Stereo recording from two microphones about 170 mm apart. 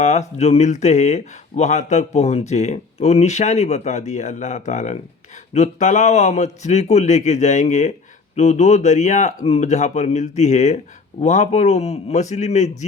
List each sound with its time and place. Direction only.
0.0 s speech: 40° left (ahead or behind)